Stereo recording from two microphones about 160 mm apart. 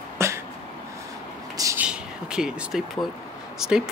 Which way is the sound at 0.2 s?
15° right (ahead or behind).